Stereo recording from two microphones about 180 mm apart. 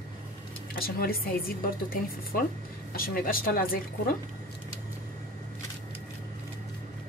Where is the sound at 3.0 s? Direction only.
55° left (ahead or behind).